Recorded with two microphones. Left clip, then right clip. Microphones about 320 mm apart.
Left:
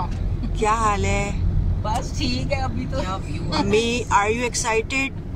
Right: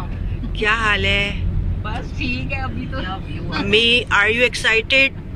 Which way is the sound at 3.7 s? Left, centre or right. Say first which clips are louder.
Right 6 dB; centre.